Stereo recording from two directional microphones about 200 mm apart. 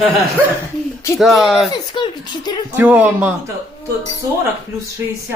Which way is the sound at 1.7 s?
20° left (ahead or behind).